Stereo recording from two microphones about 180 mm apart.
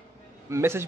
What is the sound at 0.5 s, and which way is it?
Speech, 15° right (ahead or behind).